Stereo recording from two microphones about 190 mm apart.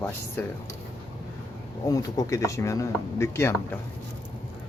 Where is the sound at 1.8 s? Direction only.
20° left (ahead or behind).